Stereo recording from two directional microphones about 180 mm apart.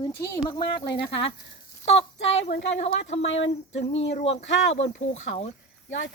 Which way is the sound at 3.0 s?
35° left (ahead or behind).